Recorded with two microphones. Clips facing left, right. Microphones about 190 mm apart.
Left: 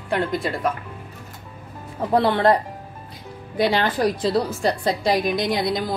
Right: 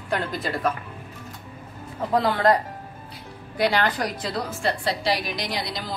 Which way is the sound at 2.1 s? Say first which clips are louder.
Left 3 dB; 30° left (ahead or behind).